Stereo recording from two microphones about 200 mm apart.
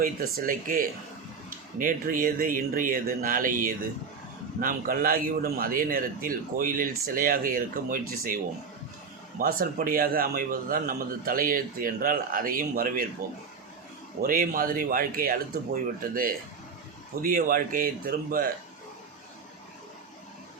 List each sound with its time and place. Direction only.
0.0 s a man's voice: 45° right (ahead or behind)
9.4 s a man's voice: 45° right (ahead or behind)
14.2 s a man's voice: 45° right (ahead or behind)